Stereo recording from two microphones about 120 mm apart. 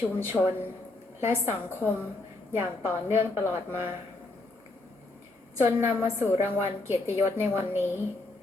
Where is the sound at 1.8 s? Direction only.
15° left (ahead or behind).